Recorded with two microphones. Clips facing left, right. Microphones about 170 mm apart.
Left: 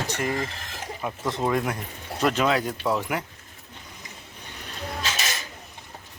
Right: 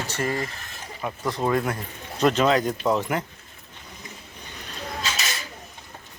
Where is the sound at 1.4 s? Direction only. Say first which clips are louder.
Right 2 dB; 10° left (ahead or behind).